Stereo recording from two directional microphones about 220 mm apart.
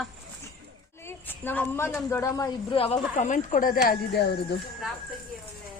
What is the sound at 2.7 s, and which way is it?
A woman's voice, 25° left (ahead or behind).